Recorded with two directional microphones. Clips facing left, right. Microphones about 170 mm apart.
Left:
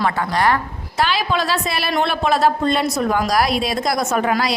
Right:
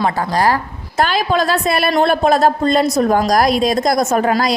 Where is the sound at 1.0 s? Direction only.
45° right (ahead or behind).